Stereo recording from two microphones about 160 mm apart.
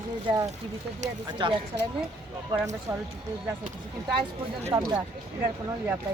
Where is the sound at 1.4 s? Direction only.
30° right (ahead or behind).